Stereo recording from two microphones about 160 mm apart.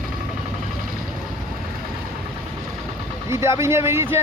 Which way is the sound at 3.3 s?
20° right (ahead or behind).